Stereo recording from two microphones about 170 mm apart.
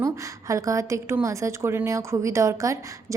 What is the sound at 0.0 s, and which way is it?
A woman's voice, 20° right (ahead or behind).